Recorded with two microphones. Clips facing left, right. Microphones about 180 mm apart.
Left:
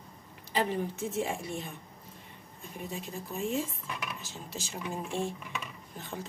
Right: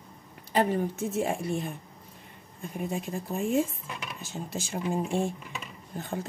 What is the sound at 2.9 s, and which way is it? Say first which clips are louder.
A woman's voice: right 5 dB; 50° right (ahead or behind).